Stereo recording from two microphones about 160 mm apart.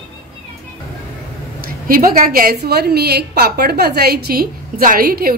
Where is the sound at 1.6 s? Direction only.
65° right (ahead or behind).